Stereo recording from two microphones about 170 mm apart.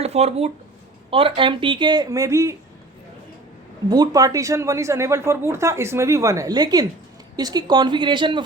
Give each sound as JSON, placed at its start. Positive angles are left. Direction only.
{"t": 0.0, "sound": "speech", "side_deg": -40}
{"t": 3.8, "sound": "speech", "side_deg": -25}